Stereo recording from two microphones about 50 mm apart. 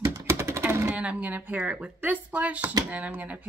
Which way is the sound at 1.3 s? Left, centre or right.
Right.